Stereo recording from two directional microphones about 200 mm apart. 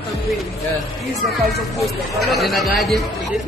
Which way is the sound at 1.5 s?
Centre (ahead or behind).